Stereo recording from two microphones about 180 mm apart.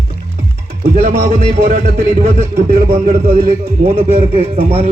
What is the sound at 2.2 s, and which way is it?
Speech, 55° right (ahead or behind).